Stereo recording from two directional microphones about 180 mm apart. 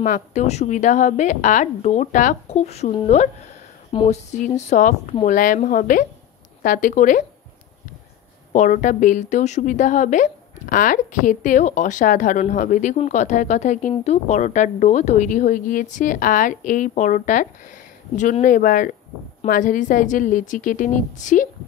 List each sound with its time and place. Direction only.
0.0 s a woman's voice: 45° left (ahead or behind)
8.5 s a woman's voice: 45° left (ahead or behind)